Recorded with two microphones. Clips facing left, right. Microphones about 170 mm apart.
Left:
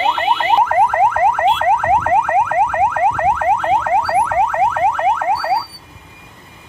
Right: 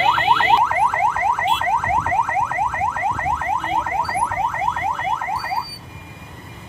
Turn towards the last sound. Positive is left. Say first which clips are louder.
# left 7 dB
turn(degrees=75)  # may be behind; listen again after turning